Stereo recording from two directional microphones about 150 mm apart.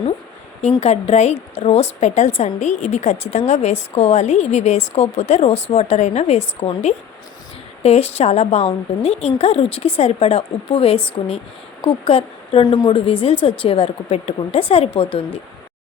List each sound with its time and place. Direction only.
0.8 s a woman's voice: 45° left (ahead or behind)
7.8 s a woman's voice: 45° left (ahead or behind)